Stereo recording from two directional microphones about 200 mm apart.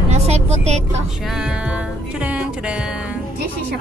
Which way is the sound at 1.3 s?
5° right (ahead or behind).